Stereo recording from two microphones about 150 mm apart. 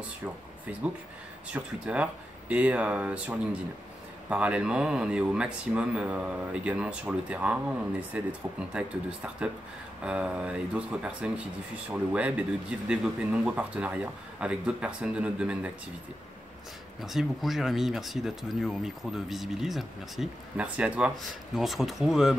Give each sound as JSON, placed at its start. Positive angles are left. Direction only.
{"t": 0.2, "sound": "speech", "side_deg": -10}
{"t": 17.0, "sound": "speech", "side_deg": 0}